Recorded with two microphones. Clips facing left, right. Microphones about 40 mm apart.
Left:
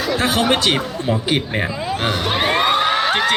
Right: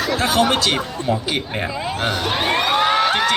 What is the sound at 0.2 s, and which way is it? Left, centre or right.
Speech, left.